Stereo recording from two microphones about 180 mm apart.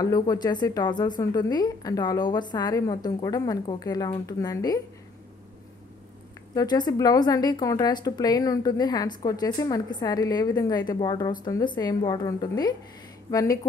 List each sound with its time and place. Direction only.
0.0 s a woman's voice: 20° left (ahead or behind)
6.5 s a woman's voice: 20° left (ahead or behind)